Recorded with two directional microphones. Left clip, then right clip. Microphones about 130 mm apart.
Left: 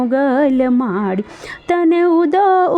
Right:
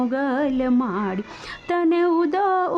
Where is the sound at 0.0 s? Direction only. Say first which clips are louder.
Left 8 dB; 40° left (ahead or behind).